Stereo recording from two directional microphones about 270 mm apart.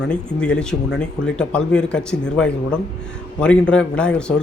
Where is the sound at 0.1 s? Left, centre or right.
Centre.